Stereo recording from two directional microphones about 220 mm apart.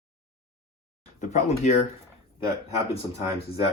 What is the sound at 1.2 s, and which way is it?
Speech, 30° left (ahead or behind).